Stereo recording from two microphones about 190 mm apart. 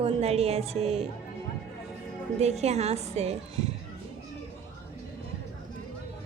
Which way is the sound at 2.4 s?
35° right (ahead or behind).